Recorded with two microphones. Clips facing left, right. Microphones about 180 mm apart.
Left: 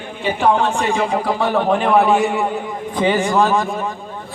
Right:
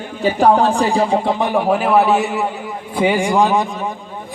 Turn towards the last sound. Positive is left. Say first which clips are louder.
# right 1 dB
turn(degrees=-15)  # may be behind; listen again after turning